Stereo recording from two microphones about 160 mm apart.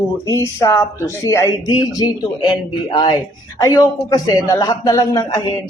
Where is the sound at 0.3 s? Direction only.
20° left (ahead or behind).